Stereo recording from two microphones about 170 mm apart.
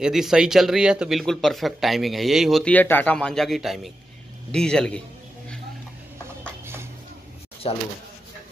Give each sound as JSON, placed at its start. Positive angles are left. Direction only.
{"t": 0.0, "sound": "speech", "side_deg": 0}
{"t": 6.6, "sound": "vehicle", "side_deg": -15}
{"t": 7.6, "sound": "speech", "side_deg": 35}